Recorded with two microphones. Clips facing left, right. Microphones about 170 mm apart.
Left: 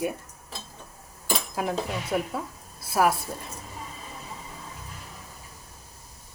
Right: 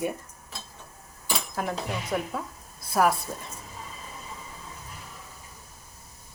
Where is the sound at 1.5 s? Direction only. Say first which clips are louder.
Left 2 dB; 5° left (ahead or behind).